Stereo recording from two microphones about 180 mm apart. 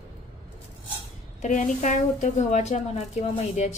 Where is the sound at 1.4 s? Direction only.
40° left (ahead or behind).